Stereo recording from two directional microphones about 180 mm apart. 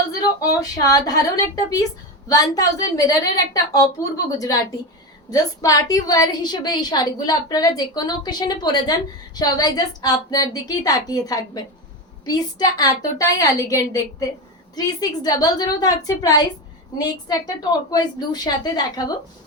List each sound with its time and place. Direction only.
0.3 s a woman's voice: 20° left (ahead or behind)